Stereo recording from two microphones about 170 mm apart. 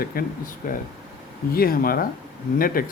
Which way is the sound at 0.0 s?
60° left (ahead or behind).